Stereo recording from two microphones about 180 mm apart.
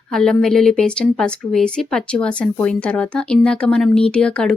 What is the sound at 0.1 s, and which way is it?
Speech, 5° left (ahead or behind).